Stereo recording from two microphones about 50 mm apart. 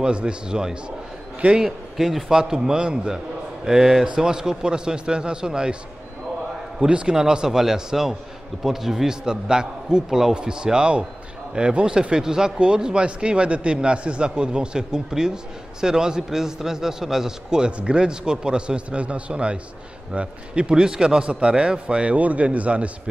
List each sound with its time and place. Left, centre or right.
0.0 s speech: centre
6.8 s a man's voice: centre